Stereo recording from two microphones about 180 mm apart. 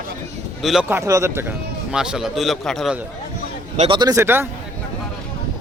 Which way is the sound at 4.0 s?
15° right (ahead or behind).